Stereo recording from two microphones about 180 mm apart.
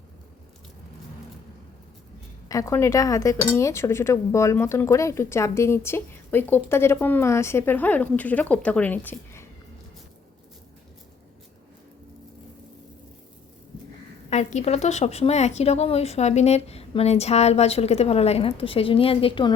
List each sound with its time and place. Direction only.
2.5 s speech: 15° left (ahead or behind)
14.3 s a woman's voice: 40° left (ahead or behind)